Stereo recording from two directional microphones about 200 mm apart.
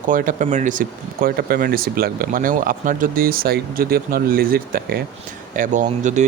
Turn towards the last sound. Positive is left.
turn(degrees=-35)  # may be behind; listen again after turning